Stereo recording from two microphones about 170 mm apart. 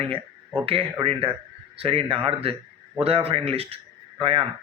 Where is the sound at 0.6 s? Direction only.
30° right (ahead or behind).